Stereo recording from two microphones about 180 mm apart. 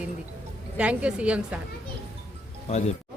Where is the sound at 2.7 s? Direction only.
35° left (ahead or behind).